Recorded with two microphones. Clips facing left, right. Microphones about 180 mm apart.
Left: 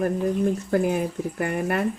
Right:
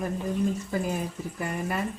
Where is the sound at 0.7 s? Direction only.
65° left (ahead or behind).